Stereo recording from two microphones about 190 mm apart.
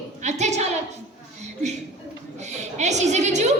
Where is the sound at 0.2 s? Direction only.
35° right (ahead or behind).